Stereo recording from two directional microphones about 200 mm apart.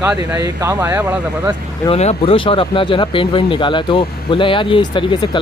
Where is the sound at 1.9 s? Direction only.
30° left (ahead or behind).